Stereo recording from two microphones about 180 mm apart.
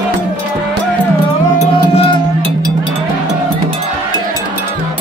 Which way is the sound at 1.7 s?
30° left (ahead or behind).